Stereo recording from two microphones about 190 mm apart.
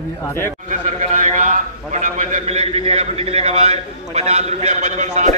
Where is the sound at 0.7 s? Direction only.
35° right (ahead or behind).